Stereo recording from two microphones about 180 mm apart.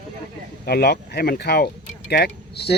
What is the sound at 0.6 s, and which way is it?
A man's voice, 60° left (ahead or behind).